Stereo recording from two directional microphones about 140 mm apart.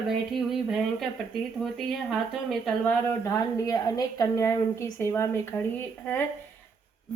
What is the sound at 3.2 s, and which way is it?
A woman's voice, 25° left (ahead or behind).